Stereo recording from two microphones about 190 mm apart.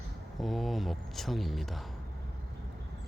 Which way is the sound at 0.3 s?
Centre (ahead or behind).